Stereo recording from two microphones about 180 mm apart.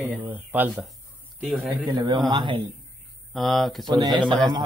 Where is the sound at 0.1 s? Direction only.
10° right (ahead or behind).